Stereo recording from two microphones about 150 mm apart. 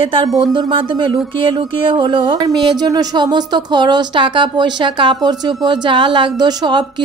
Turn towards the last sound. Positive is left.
turn(degrees=-30)  # may be behind; listen again after turning